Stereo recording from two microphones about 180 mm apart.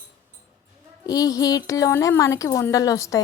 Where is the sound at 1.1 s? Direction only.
20° left (ahead or behind).